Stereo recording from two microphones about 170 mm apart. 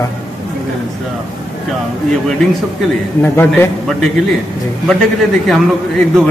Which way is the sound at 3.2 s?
15° left (ahead or behind).